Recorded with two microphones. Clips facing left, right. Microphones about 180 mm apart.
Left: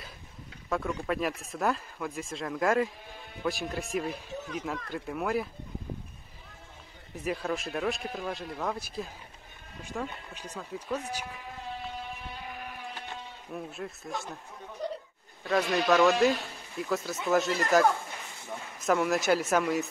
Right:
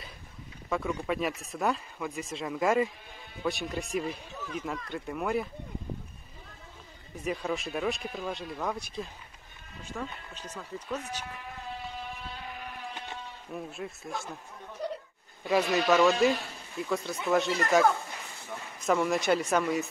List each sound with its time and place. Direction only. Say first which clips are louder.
0.7 s speech: even; centre (ahead or behind)
7.2 s speech: even; centre (ahead or behind)
12.9 s sheep: even; 20° right (ahead or behind)
13.5 s speech: even; centre (ahead or behind)
15.4 s speech: right 1 dB; 10° right (ahead or behind)
18.9 s speech: even; centre (ahead or behind)